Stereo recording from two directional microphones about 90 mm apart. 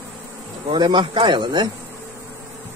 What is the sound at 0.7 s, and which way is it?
Speech, 60° right (ahead or behind).